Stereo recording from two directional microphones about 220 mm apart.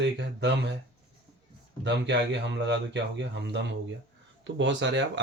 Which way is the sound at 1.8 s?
50° right (ahead or behind).